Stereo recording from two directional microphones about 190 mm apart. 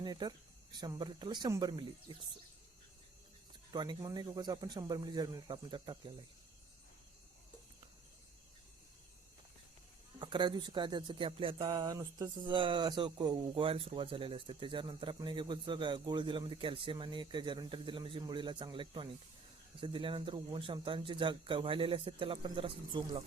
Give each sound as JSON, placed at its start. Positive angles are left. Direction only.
{"t": 0.0, "sound": "speech", "side_deg": -20}
{"t": 3.7, "sound": "speech", "side_deg": -20}
{"t": 10.2, "sound": "speech", "side_deg": -25}